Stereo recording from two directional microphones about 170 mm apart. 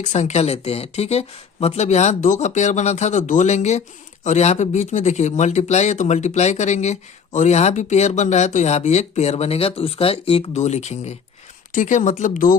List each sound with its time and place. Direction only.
0.0 s speech: 40° left (ahead or behind)